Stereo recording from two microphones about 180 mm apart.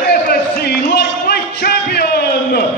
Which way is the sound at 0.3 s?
60° left (ahead or behind).